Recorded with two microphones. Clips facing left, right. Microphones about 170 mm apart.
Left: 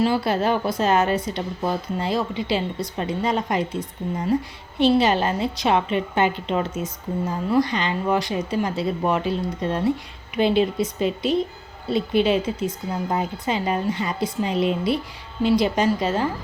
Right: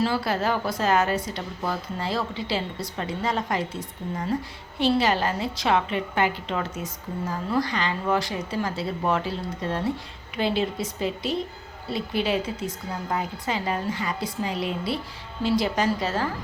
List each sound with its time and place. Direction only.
0.0 s a woman's voice: 20° left (ahead or behind)